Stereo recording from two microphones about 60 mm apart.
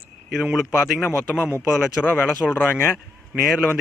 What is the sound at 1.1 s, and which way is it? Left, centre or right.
Speech, centre.